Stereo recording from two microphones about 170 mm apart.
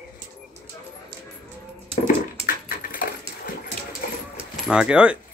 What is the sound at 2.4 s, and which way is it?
Dog, 55° left (ahead or behind).